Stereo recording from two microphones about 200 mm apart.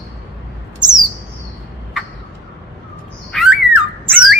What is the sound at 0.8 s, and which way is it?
Chirp, 20° right (ahead or behind).